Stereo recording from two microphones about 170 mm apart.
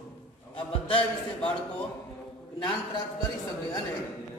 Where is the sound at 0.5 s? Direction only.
30° left (ahead or behind).